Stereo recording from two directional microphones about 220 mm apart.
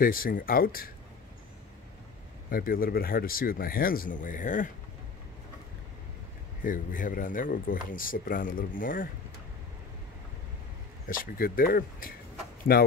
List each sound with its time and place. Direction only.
0.0 s speech: 40° left (ahead or behind)
2.5 s speech: 40° left (ahead or behind)
6.6 s speech: 40° left (ahead or behind)
11.1 s speech: 40° left (ahead or behind)